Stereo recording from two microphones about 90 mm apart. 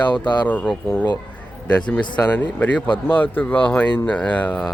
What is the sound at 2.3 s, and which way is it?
Speech, 20° left (ahead or behind).